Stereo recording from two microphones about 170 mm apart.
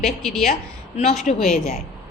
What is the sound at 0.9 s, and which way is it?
Speech, 40° left (ahead or behind).